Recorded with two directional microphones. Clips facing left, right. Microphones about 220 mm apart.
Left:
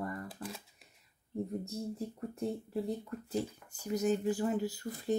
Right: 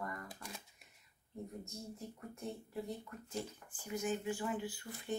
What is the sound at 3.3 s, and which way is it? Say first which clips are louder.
Speech: left 7 dB; 40° left (ahead or behind).